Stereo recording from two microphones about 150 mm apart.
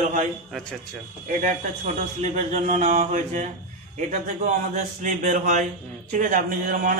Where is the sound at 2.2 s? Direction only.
50° right (ahead or behind).